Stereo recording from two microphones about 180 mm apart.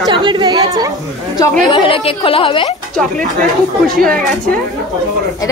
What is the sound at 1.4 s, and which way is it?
A woman's voice, 25° left (ahead or behind).